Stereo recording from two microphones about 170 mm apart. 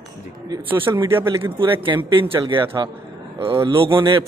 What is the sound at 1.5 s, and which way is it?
A man's voice, 30° right (ahead or behind).